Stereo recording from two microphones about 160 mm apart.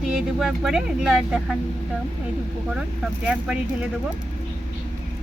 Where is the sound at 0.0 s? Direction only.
Centre (ahead or behind).